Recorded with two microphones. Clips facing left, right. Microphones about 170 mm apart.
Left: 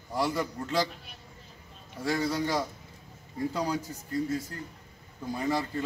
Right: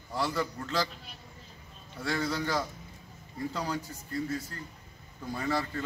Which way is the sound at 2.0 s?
10° left (ahead or behind).